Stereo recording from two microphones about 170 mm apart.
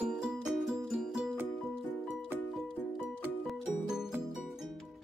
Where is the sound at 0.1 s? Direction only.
5° right (ahead or behind).